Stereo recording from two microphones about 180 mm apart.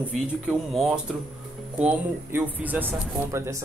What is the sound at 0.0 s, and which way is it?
Speech, centre (ahead or behind).